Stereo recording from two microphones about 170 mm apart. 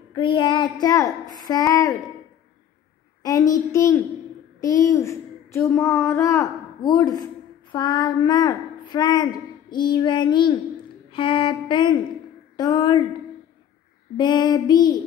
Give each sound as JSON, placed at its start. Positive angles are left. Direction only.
{"t": 0.1, "sound": "child singing", "side_deg": 30}
{"t": 3.2, "sound": "child singing", "side_deg": 20}
{"t": 4.6, "sound": "a woman's voice", "side_deg": 20}
{"t": 11.1, "sound": "child singing", "side_deg": 30}
{"t": 14.1, "sound": "child singing", "side_deg": 25}